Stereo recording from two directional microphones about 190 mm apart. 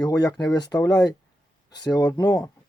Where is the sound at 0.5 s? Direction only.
20° left (ahead or behind).